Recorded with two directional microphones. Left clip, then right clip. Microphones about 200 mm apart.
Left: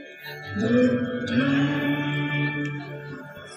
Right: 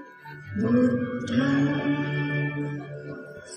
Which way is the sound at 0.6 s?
25° right (ahead or behind).